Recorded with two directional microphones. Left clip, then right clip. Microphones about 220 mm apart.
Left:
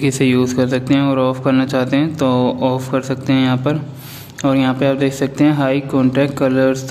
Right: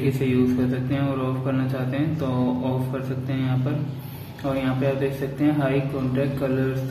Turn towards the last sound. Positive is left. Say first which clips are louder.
# left 10 dB
turn(degrees=50)  # may be behind; listen again after turning